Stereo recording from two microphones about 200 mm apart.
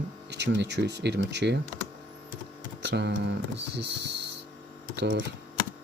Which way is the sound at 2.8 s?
60° right (ahead or behind).